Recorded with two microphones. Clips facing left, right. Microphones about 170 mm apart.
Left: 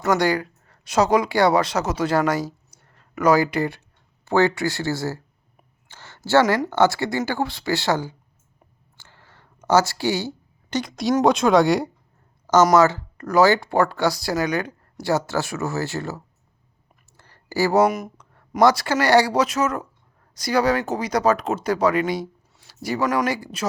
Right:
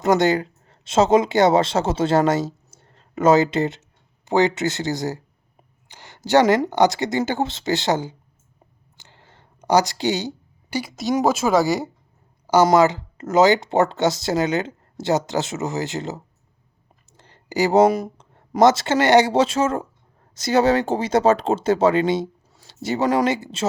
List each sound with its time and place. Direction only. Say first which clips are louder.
0.0 s a woman's voice: right 3 dB; 20° right (ahead or behind)
5.9 s a sound: right 1 dB; 15° right (ahead or behind)
6.7 s speech: right 1 dB; 15° right (ahead or behind)
9.0 s a sound: right 1 dB; 20° right (ahead or behind)
10.7 s speech: left 1 dB; 5° right (ahead or behind)
12.6 s speech: even; 20° right (ahead or behind)